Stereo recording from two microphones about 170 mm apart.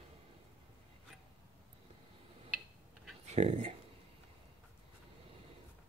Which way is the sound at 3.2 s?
40° right (ahead or behind).